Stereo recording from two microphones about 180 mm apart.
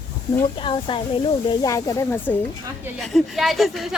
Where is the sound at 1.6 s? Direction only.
20° left (ahead or behind).